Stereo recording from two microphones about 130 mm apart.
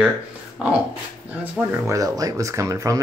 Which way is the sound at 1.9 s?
25° right (ahead or behind).